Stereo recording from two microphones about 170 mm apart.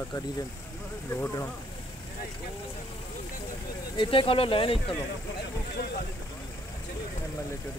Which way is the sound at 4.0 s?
30° left (ahead or behind).